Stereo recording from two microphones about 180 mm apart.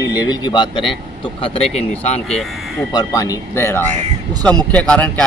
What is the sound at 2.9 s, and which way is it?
Speech, 20° left (ahead or behind).